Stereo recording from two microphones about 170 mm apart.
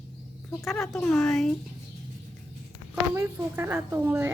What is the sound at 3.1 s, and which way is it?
A woman's voice, 15° right (ahead or behind).